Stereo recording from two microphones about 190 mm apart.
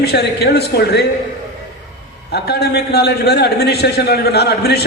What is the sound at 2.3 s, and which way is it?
A man's voice, 60° left (ahead or behind).